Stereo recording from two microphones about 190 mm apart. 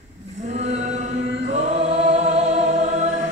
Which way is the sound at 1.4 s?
35° right (ahead or behind).